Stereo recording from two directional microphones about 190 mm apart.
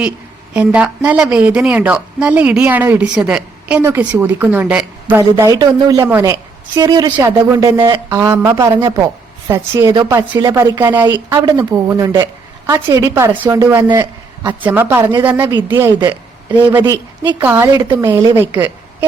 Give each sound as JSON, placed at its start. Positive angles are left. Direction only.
{"t": 0.5, "sound": "a woman's voice", "side_deg": -5}
{"t": 6.7, "sound": "a woman's voice", "side_deg": -20}